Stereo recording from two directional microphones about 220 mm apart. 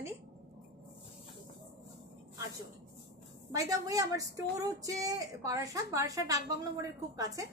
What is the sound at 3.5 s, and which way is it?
A woman's voice, 15° right (ahead or behind).